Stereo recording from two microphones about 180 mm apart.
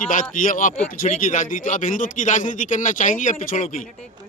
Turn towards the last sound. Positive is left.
turn(degrees=45)  # may be behind; listen again after turning